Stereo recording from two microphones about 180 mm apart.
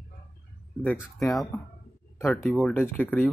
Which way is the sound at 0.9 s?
Centre (ahead or behind).